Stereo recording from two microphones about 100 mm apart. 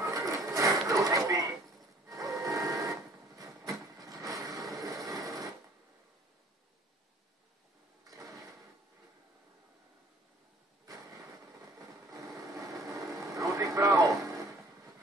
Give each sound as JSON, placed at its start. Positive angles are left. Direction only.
{"t": 0.0, "sound": "a sound", "side_deg": -35}
{"t": 2.0, "sound": "printer", "side_deg": -35}
{"t": 12.1, "sound": "vehicle", "side_deg": -35}